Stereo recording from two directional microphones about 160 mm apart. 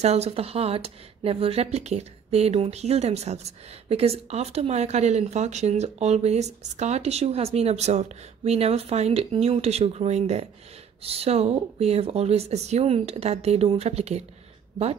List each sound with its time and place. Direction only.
0.0 s speech: 40° right (ahead or behind)